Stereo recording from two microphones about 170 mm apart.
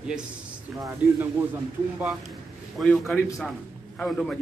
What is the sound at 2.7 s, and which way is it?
A man's voice, 5° left (ahead or behind).